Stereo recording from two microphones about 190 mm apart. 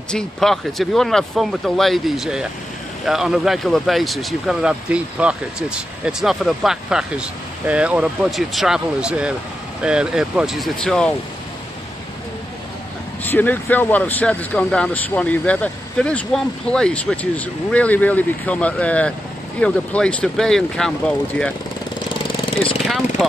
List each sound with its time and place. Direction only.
0.1 s speech: 5° left (ahead or behind)
13.2 s speech: 10° left (ahead or behind)
22.8 s vehicle: centre (ahead or behind)